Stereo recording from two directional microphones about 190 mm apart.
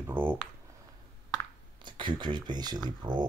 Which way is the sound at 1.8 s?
25° right (ahead or behind).